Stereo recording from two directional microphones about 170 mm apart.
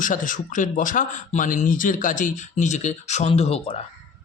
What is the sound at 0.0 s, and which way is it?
Speech, 50° left (ahead or behind).